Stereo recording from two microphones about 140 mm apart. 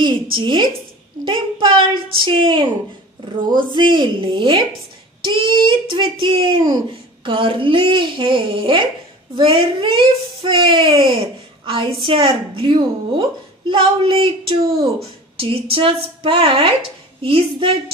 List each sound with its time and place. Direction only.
0.0 s a woman's voice: 35° right (ahead or behind)